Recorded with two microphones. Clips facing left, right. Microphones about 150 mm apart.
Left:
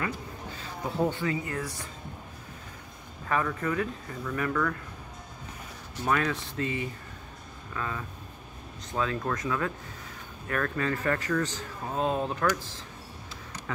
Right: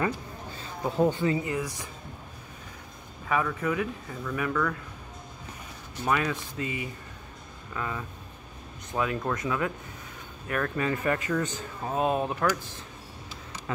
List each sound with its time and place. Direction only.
0.8 s speech: 15° right (ahead or behind)
1.2 s speech: 25° right (ahead or behind)
1.5 s speech: 15° right (ahead or behind)
3.3 s speech: 5° right (ahead or behind)
6.0 s speech: 10° right (ahead or behind)